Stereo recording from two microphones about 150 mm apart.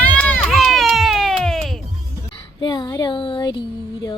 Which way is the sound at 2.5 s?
30° left (ahead or behind).